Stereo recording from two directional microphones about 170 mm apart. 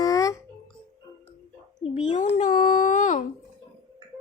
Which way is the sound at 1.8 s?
40° left (ahead or behind).